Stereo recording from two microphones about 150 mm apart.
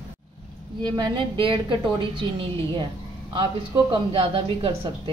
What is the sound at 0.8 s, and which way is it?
A woman's voice, 30° right (ahead or behind).